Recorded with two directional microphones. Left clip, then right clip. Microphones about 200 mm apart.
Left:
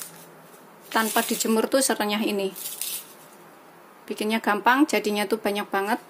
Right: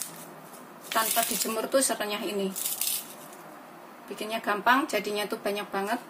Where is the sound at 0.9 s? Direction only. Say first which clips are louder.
Left 3 dB; 45° left (ahead or behind).